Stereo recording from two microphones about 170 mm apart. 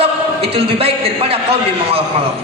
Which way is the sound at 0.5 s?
35° right (ahead or behind).